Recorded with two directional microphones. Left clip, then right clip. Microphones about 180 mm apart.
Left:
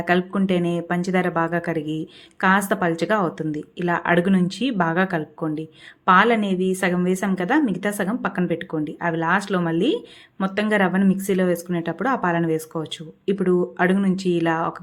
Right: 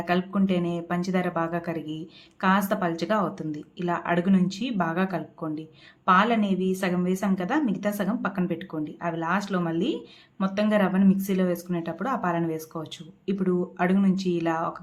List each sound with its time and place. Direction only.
0.0 s a woman's voice: 25° left (ahead or behind)